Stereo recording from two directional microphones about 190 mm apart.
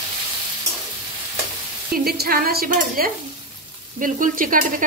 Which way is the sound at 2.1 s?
50° right (ahead or behind).